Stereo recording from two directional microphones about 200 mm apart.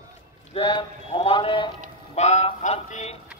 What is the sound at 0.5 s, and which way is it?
Speech, 25° left (ahead or behind).